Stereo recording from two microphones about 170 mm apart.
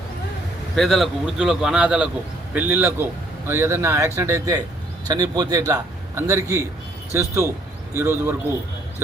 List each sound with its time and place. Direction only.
0.8 s a man's voice: centre (ahead or behind)